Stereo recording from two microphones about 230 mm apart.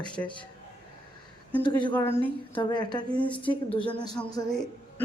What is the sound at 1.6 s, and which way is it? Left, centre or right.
Speech, centre.